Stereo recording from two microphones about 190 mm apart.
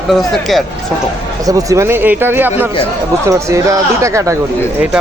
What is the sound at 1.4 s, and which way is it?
Speech, 15° right (ahead or behind).